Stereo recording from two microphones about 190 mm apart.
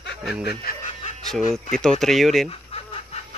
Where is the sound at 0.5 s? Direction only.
50° left (ahead or behind).